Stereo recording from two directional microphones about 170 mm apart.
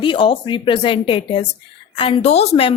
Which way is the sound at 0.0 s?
30° left (ahead or behind).